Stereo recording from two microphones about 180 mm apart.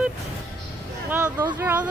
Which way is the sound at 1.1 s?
20° right (ahead or behind).